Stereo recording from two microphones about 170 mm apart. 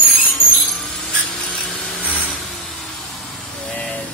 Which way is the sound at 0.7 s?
5° left (ahead or behind).